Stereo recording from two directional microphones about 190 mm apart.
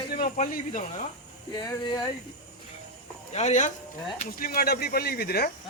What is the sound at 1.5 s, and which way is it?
Speech, 20° left (ahead or behind).